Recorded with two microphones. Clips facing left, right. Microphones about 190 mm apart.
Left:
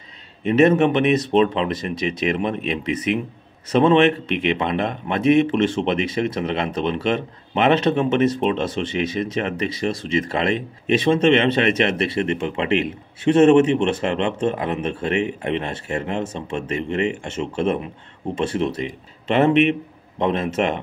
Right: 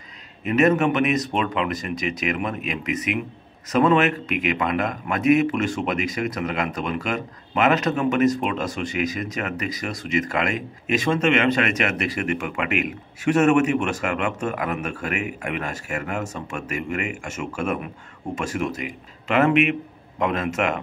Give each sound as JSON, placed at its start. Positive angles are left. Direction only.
{"t": 0.5, "sound": "speech", "side_deg": 25}